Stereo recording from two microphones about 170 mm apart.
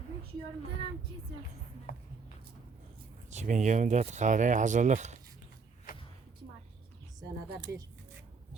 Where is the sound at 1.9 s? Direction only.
60° left (ahead or behind).